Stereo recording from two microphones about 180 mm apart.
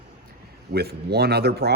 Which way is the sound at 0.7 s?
65° right (ahead or behind).